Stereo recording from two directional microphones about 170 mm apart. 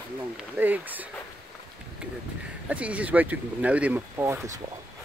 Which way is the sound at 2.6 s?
10° right (ahead or behind).